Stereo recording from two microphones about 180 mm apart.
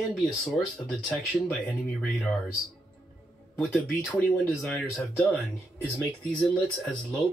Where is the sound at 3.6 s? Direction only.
Centre (ahead or behind).